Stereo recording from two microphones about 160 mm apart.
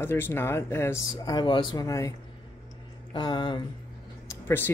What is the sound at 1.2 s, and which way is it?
Speech, 30° left (ahead or behind).